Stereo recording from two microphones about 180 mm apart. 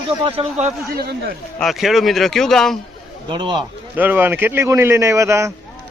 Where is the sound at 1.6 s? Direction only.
Centre (ahead or behind).